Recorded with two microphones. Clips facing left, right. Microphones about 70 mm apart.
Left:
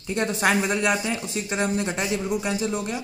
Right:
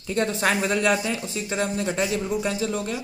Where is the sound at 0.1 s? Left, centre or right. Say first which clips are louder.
Left 1 dB; left.